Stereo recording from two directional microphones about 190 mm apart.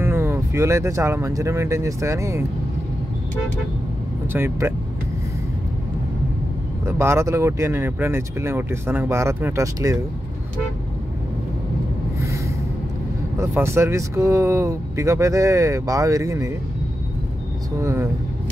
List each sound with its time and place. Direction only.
0.0 s speech: 10° right (ahead or behind)
4.3 s speech: 15° right (ahead or behind)
6.9 s speech: 15° right (ahead or behind)
13.4 s speech: 15° right (ahead or behind)
17.7 s speech: 15° right (ahead or behind)